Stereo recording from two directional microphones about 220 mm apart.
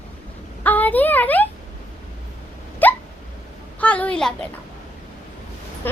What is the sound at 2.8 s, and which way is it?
Hiccup, 10° left (ahead or behind).